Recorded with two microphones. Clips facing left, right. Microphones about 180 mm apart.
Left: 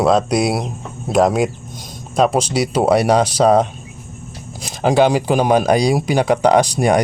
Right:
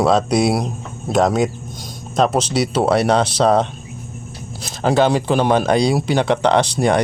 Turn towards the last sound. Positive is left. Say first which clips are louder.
# left 2 dB
turn(degrees=10)  # may be behind; listen again after turning